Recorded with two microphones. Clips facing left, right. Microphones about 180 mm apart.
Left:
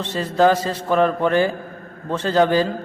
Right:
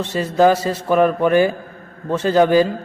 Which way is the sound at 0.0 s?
10° right (ahead or behind).